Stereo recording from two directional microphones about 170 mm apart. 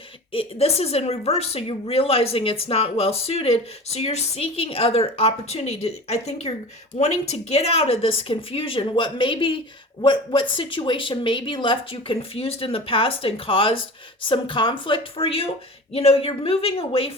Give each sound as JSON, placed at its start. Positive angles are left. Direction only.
{"t": 0.3, "sound": "speech", "side_deg": 35}